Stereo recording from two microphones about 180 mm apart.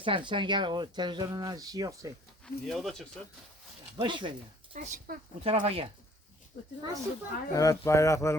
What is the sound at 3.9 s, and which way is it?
Speech, 25° right (ahead or behind).